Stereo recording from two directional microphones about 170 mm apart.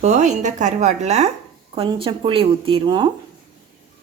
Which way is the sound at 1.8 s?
30° right (ahead or behind).